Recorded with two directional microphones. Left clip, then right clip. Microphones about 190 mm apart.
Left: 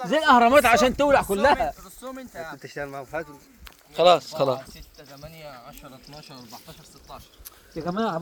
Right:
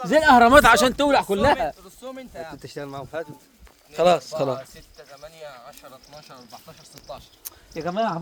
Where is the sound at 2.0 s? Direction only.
5° right (ahead or behind).